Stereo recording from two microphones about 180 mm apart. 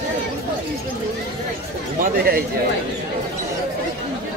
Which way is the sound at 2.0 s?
55° right (ahead or behind).